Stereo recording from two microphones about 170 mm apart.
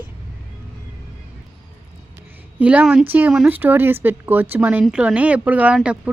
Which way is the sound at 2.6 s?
10° right (ahead or behind).